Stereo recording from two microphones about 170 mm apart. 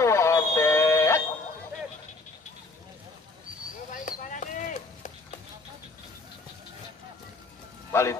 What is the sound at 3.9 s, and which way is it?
Clip-clop, 50° left (ahead or behind).